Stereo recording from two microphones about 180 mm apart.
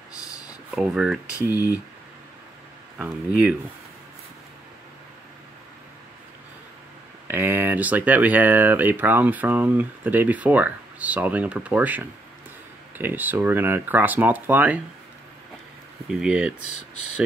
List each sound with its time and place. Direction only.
0.1 s a sound: 20° left (ahead or behind)
0.7 s speech: 5° right (ahead or behind)
7.2 s speech: 10° right (ahead or behind)
16.1 s speech: 5° right (ahead or behind)